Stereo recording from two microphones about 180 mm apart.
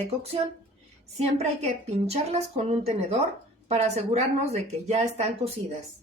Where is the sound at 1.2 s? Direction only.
35° right (ahead or behind).